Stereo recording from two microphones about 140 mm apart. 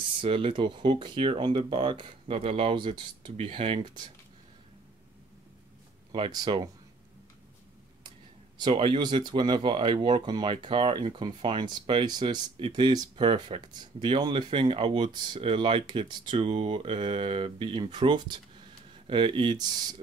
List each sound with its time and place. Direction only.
0.1 s speech: 40° right (ahead or behind)
6.1 s speech: 35° right (ahead or behind)
8.5 s speech: 35° right (ahead or behind)